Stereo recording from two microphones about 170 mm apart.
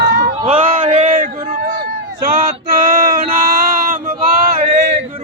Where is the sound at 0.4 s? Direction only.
45° right (ahead or behind).